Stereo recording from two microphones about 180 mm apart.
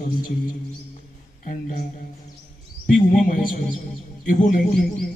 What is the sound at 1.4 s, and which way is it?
Speech, 45° left (ahead or behind).